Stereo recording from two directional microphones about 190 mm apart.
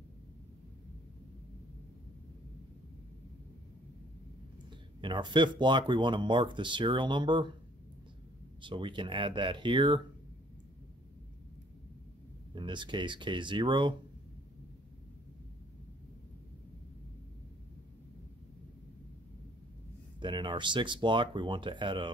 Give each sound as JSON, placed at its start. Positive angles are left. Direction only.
{"t": 5.0, "sound": "speech", "side_deg": -25}
{"t": 8.5, "sound": "speech", "side_deg": -25}
{"t": 12.5, "sound": "speech", "side_deg": -25}
{"t": 20.2, "sound": "speech", "side_deg": -25}